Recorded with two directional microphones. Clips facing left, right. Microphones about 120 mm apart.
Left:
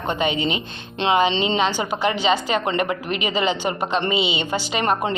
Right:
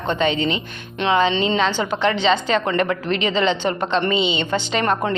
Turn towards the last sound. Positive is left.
turn(degrees=20)  # may be behind; listen again after turning